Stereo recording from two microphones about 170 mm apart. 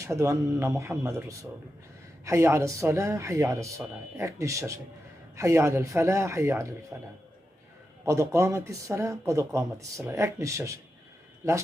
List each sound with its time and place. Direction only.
0.0 s speech: 20° right (ahead or behind)